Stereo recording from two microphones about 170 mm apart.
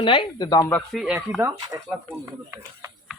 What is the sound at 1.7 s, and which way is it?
Speech, 20° right (ahead or behind).